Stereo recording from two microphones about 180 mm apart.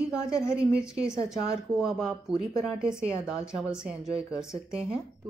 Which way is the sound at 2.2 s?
20° left (ahead or behind).